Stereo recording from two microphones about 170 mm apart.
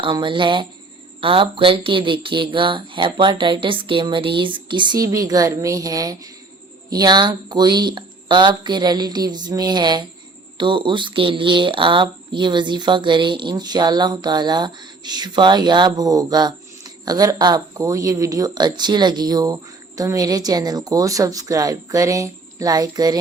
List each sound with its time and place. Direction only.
0.0 s speech: 30° right (ahead or behind)